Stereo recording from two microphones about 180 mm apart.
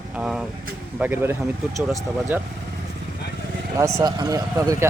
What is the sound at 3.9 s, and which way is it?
Speech, 20° right (ahead or behind).